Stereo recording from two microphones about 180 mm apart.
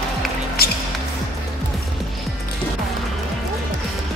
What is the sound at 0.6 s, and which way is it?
Music, 60° left (ahead or behind).